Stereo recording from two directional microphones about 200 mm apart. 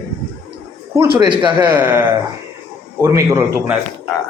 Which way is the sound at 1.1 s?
25° right (ahead or behind).